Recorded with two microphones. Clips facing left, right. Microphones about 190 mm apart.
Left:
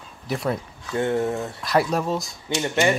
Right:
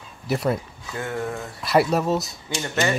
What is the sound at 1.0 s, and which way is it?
Speech, 25° left (ahead or behind).